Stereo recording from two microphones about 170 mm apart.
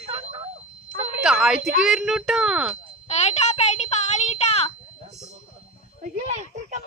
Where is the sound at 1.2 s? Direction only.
5° right (ahead or behind).